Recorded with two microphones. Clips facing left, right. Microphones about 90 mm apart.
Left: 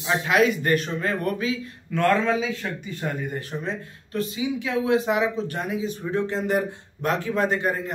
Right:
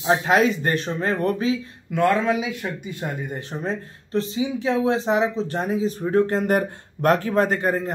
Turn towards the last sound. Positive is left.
turn(degrees=-40)  # may be behind; listen again after turning